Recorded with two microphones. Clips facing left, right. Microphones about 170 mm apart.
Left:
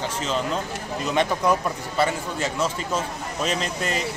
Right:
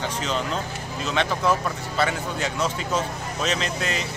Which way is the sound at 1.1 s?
10° left (ahead or behind).